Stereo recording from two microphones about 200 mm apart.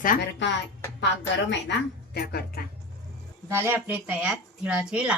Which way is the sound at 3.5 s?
10° right (ahead or behind).